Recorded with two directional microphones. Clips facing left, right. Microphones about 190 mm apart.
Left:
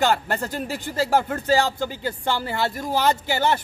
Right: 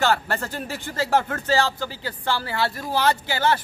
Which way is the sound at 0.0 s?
15° left (ahead or behind).